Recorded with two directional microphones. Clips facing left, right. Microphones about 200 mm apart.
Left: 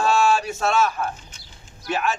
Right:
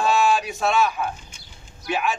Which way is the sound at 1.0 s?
Centre (ahead or behind).